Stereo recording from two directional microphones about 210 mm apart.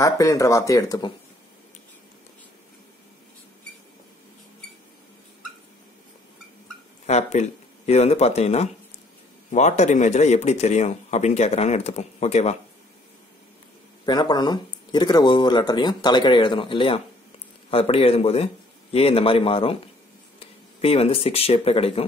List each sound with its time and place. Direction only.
0.0 s speech: 15° left (ahead or behind)
7.1 s speech: 35° left (ahead or behind)
14.0 s speech: 20° left (ahead or behind)